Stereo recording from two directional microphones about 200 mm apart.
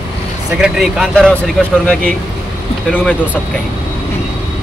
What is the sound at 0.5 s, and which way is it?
Speech, centre (ahead or behind).